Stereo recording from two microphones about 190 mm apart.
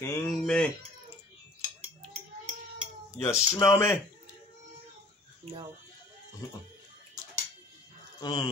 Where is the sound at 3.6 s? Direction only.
15° left (ahead or behind).